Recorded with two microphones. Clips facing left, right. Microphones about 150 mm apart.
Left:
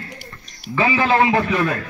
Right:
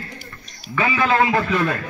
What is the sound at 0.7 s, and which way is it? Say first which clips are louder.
Speech: left 2 dB; 30° left (ahead or behind).